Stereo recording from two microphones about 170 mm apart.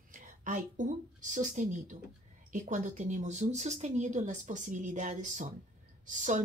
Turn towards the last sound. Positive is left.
turn(degrees=-45)  # may be behind; listen again after turning